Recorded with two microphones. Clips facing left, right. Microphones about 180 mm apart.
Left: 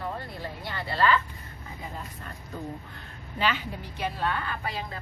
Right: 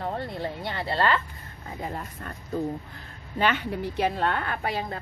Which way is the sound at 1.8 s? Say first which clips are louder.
Right 6 dB; 55° right (ahead or behind).